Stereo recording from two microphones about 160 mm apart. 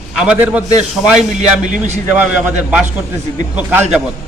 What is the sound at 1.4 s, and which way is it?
Speech, 50° right (ahead or behind).